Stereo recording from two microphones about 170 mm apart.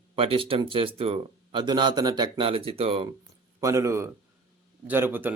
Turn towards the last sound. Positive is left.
turn(degrees=-10)  # may be behind; listen again after turning